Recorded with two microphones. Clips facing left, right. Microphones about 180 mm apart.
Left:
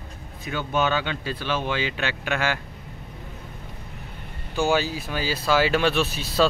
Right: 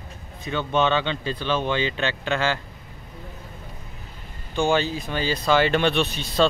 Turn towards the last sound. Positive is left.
turn(degrees=5)  # may be behind; listen again after turning